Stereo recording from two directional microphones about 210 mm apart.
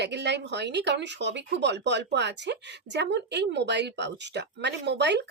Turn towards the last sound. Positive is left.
turn(degrees=-55)  # may be behind; listen again after turning